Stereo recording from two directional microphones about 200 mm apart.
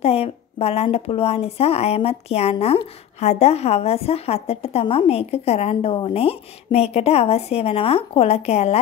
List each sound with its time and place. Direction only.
0.0 s a woman's voice: 30° left (ahead or behind)